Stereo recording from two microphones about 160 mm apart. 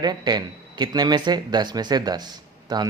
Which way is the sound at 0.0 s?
25° right (ahead or behind).